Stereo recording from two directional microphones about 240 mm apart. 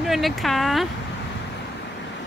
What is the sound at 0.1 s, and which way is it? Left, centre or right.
Speech, centre.